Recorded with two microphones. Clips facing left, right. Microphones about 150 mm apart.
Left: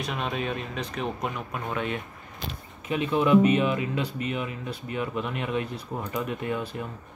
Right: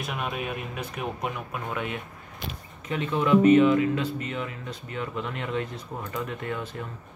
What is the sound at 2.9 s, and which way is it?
Speech, 15° left (ahead or behind).